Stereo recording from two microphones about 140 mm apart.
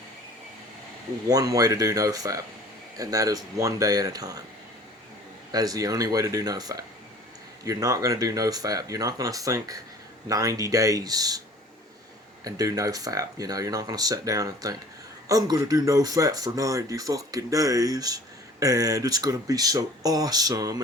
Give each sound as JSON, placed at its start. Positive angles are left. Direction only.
{"t": 1.3, "sound": "speech", "side_deg": -25}
{"t": 5.5, "sound": "speech", "side_deg": -25}
{"t": 12.5, "sound": "speech", "side_deg": -25}